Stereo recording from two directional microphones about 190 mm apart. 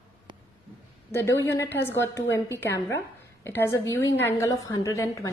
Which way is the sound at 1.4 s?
15° left (ahead or behind).